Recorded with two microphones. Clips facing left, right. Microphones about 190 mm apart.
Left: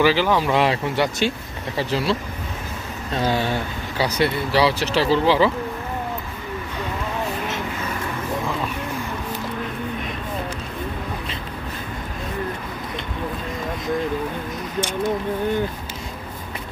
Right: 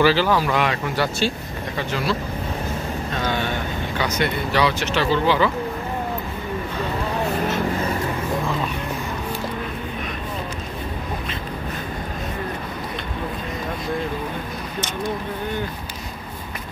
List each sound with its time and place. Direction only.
0.0 s speech: 15° left (ahead or behind)
3.2 s speech: 35° left (ahead or behind)